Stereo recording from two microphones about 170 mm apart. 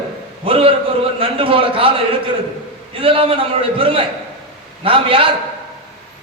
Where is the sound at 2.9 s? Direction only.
35° right (ahead or behind).